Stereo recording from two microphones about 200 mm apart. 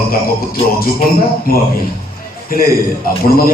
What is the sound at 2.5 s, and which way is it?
Speech, 45° left (ahead or behind).